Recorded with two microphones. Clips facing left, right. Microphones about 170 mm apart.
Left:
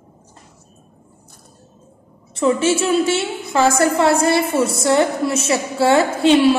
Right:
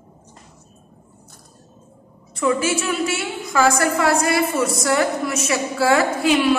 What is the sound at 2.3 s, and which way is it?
A woman's voice, 30° left (ahead or behind).